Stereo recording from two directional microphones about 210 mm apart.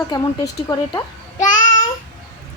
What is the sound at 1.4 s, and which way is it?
Child singing, 35° left (ahead or behind).